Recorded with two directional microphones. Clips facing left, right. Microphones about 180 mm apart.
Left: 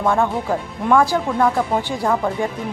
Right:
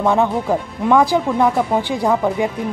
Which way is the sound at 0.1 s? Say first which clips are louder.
Right 3 dB; 15° right (ahead or behind).